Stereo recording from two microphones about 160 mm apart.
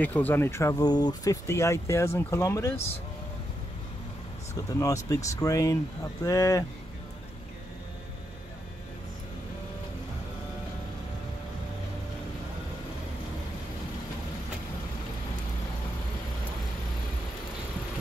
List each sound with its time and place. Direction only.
0.0 s speech: 10° left (ahead or behind)
4.6 s speech: 20° left (ahead or behind)